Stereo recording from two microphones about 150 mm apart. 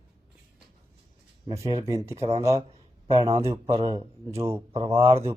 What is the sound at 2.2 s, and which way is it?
Speech, 40° right (ahead or behind).